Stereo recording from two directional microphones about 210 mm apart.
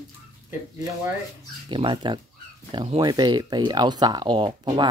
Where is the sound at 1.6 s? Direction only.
25° right (ahead or behind).